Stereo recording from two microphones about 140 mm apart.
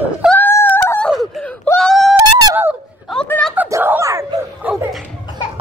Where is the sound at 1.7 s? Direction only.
Centre (ahead or behind).